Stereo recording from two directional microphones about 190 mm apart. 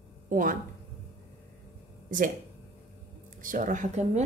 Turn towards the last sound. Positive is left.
turn(degrees=-40)  # may be behind; listen again after turning